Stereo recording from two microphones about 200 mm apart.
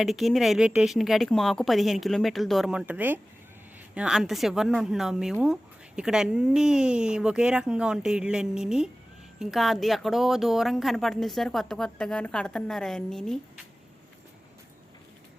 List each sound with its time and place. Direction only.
0.0 s speech: centre (ahead or behind)